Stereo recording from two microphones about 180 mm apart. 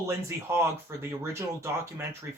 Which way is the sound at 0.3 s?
15° right (ahead or behind).